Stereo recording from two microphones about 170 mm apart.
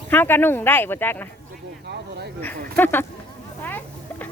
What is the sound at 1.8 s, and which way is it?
Speech, 80° right.